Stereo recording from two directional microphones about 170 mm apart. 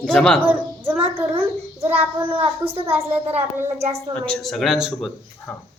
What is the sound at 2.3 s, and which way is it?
Speech, 35° right (ahead or behind).